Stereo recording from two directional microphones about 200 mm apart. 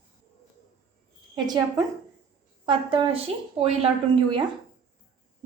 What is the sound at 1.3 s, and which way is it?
A woman's voice, 20° right (ahead or behind).